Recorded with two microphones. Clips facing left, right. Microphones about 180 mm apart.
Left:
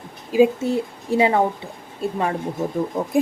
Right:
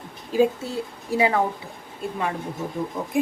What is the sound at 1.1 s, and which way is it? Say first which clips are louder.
Speech: left 3 dB; 25° left (ahead or behind).